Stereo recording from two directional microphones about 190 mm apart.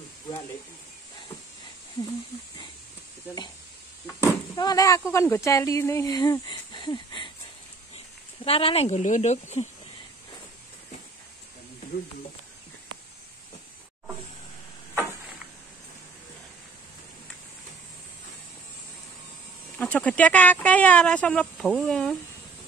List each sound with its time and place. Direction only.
3.3 s speech: 10° right (ahead or behind)
4.2 s speech: 15° left (ahead or behind)
8.5 s speech: 30° left (ahead or behind)
19.8 s speech: 5° left (ahead or behind)